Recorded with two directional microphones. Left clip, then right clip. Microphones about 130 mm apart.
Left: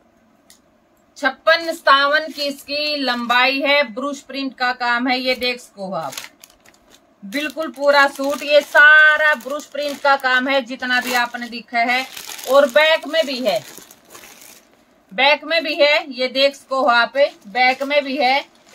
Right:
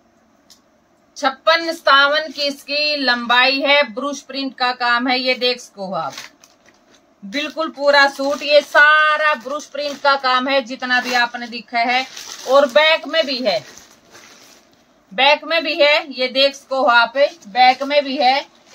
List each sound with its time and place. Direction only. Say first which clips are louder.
1.1 s female singing: even; 5° right (ahead or behind)
7.3 s female singing: right 1 dB; 5° right (ahead or behind)
15.1 s speech: right 1 dB; 5° left (ahead or behind)